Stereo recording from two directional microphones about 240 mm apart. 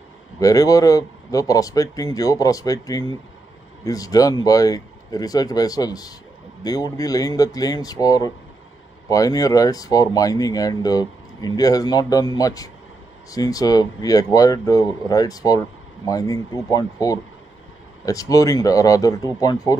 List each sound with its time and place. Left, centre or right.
0.4 s speech: centre